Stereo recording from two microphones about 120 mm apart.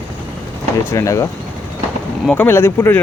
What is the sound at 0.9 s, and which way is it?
Speech, 25° left (ahead or behind).